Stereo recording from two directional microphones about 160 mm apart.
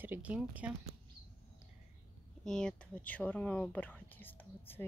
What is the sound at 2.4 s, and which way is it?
Speech, 5° left (ahead or behind).